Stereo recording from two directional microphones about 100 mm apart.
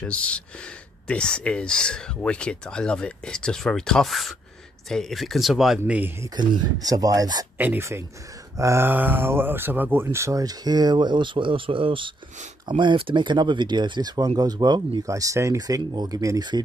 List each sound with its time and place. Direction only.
0.0 s speech: 10° left (ahead or behind)
5.9 s speech: 15° right (ahead or behind)
6.3 s speech: 40° right (ahead or behind)
7.5 s speech: 20° right (ahead or behind); by 16.4 s 35° right (ahead or behind)